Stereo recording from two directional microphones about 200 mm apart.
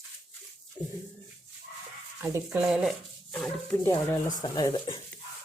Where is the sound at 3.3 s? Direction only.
10° left (ahead or behind).